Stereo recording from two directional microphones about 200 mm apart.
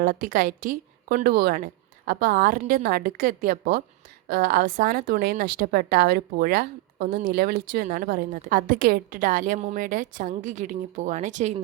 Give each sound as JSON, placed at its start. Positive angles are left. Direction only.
{"t": 0.0, "sound": "a woman's voice", "side_deg": -45}